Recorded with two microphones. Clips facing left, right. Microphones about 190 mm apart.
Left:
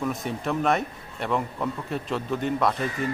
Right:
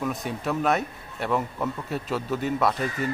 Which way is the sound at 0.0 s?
Centre (ahead or behind).